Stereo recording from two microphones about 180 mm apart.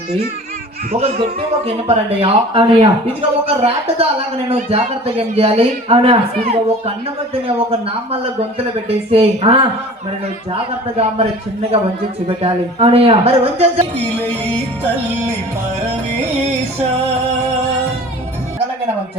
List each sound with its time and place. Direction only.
0.9 s a man's voice: 35° right (ahead or behind)
12.4 s a man's voice: 35° right (ahead or behind)